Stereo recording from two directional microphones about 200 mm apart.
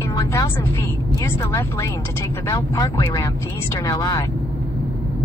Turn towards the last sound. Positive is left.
turn(degrees=20)  # may be behind; listen again after turning